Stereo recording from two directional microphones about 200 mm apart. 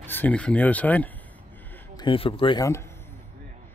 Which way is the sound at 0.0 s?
10° left (ahead or behind).